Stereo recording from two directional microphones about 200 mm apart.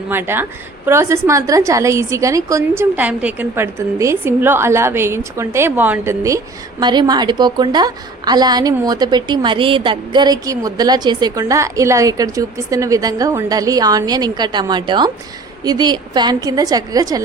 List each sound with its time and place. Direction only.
0.1 s a woman's voice: 10° right (ahead or behind)